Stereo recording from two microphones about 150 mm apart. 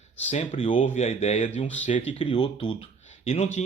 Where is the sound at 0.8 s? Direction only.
50° left (ahead or behind).